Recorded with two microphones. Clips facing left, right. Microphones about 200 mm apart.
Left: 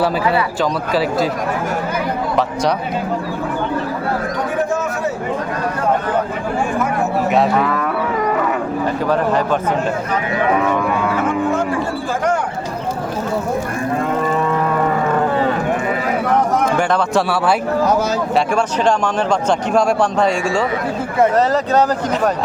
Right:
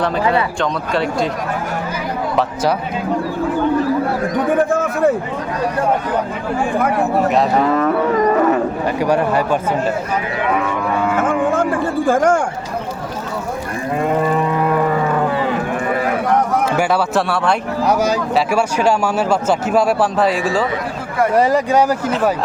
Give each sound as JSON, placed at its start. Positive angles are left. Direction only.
{"t": 0.6, "sound": "a man's voice", "side_deg": 5}
{"t": 4.7, "sound": "a sound", "side_deg": -55}
{"t": 9.0, "sound": "speech", "side_deg": -15}
{"t": 11.1, "sound": "music", "side_deg": -50}
{"t": 12.0, "sound": "speech", "side_deg": -50}
{"t": 16.7, "sound": "a man's voice", "side_deg": -5}
{"t": 18.3, "sound": "a man's voice", "side_deg": -10}